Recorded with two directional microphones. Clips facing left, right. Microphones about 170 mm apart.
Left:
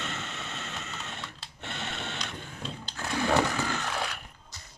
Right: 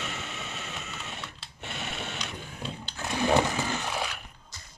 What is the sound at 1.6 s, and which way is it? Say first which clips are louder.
Sewing machine: even; 10° right (ahead or behind).